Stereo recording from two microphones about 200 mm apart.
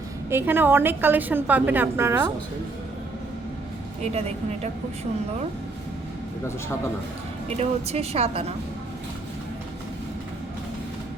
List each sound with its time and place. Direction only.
0.3 s a woman's voice: 10° right (ahead or behind)
7.6 s a woman's voice: 30° right (ahead or behind)